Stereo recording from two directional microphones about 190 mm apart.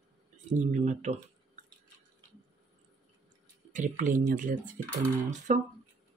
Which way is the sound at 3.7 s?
45° right (ahead or behind).